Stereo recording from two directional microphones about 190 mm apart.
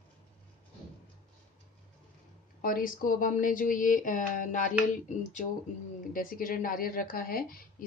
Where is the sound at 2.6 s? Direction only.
45° left (ahead or behind).